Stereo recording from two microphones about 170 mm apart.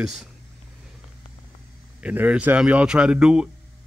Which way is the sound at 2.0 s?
10° right (ahead or behind).